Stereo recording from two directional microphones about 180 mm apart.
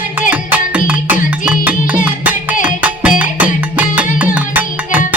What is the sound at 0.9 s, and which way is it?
Music, 10° right (ahead or behind).